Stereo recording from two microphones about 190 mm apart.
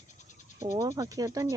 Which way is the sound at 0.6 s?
15° right (ahead or behind).